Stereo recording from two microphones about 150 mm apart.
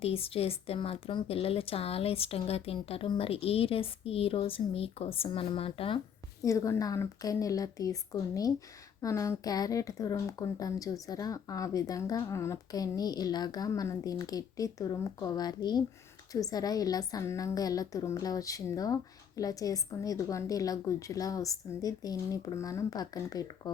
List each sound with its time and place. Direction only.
0.0 s a woman's voice: 40° left (ahead or behind)
6.4 s speech: 20° left (ahead or behind)